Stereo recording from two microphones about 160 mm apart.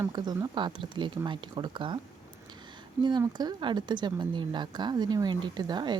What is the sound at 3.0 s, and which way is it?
A woman's voice, 25° right (ahead or behind).